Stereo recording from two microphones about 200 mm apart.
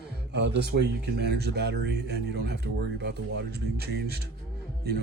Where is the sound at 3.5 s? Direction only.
55° right (ahead or behind).